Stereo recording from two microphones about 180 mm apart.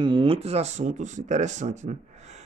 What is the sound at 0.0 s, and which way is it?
Speech, 30° right (ahead or behind).